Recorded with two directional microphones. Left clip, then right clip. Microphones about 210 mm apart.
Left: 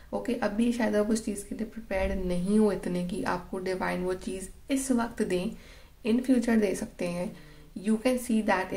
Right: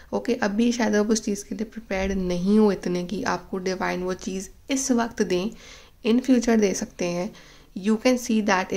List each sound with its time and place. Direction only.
0.1 s speech: 40° right (ahead or behind)